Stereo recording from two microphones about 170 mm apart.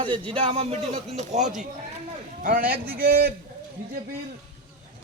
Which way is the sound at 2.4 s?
55° right (ahead or behind).